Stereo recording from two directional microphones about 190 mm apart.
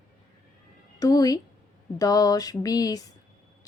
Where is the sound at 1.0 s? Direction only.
20° left (ahead or behind).